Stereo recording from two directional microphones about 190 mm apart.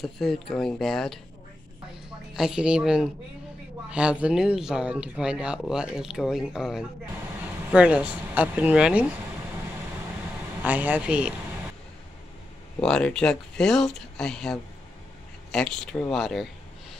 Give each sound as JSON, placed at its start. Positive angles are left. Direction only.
{"t": 0.0, "sound": "speech", "side_deg": 0}
{"t": 2.3, "sound": "speech", "side_deg": -5}
{"t": 10.6, "sound": "speech", "side_deg": -10}
{"t": 12.8, "sound": "speech", "side_deg": 5}